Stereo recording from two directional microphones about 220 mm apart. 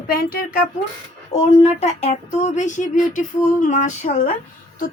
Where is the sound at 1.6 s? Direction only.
30° left (ahead or behind).